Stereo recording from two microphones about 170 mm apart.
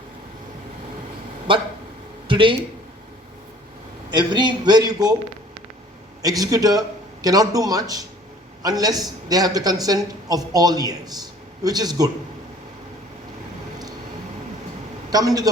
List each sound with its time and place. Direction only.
1.5 s speech: 30° right (ahead or behind)
4.1 s a man's voice: 25° right (ahead or behind)
6.2 s a man's voice: 20° right (ahead or behind)
15.1 s a man's voice: 20° right (ahead or behind)